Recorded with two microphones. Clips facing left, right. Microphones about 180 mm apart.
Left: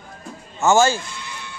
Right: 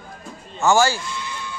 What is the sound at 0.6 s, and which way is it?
Speech, 20° left (ahead or behind).